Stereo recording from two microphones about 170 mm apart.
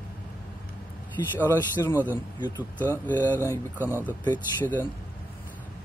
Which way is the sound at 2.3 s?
25° left (ahead or behind).